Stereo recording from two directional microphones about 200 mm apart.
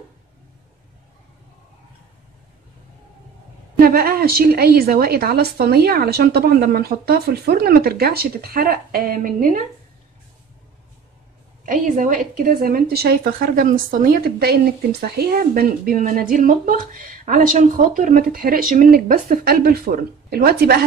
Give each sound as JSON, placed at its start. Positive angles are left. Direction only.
{"t": 3.8, "sound": "a woman's voice", "side_deg": -50}
{"t": 11.6, "sound": "a woman's voice", "side_deg": -40}